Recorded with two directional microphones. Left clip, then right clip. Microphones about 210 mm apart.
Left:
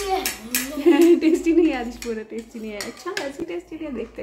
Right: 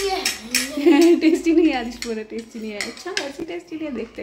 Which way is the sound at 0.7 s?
15° right (ahead or behind).